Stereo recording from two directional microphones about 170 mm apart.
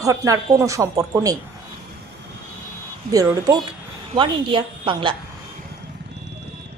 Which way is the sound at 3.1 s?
20° right (ahead or behind).